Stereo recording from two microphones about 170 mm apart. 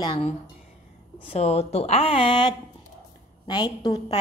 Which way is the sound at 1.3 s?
35° left (ahead or behind).